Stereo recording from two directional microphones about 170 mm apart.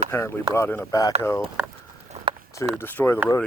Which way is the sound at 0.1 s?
15° left (ahead or behind).